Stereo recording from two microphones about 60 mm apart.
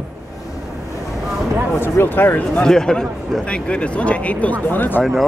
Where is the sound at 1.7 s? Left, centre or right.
Left.